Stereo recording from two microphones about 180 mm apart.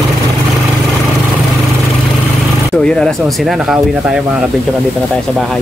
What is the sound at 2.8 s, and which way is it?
Speech, 5° left (ahead or behind).